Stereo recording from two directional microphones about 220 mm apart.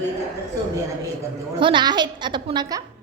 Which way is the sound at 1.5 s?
20° right (ahead or behind).